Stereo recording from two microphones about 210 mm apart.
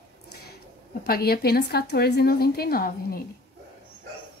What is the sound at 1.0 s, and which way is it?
Speech, 45° left (ahead or behind).